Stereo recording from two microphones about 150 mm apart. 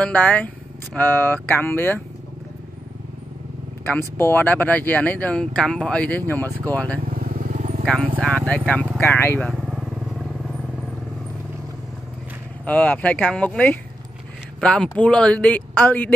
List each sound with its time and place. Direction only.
0.0 s speech: 10° left (ahead or behind)
3.8 s speech: 15° left (ahead or behind)
7.1 s vehicle: 75° right (ahead or behind)
7.5 s wild animals: 45° right (ahead or behind)
7.8 s speech: 5° left (ahead or behind)
9.5 s vehicle: centre (ahead or behind)
12.6 s speech: 10° left (ahead or behind)